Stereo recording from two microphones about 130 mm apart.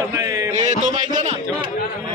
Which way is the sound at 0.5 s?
70° right (ahead or behind).